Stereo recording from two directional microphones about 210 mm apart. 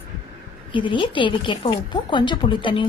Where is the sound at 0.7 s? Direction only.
25° left (ahead or behind).